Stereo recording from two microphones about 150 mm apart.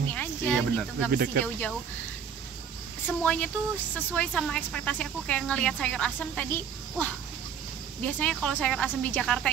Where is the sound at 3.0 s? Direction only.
10° left (ahead or behind).